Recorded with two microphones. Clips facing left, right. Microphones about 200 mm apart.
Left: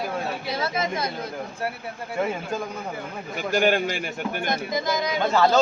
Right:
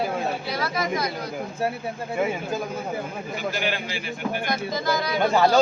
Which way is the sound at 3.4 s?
45° left (ahead or behind).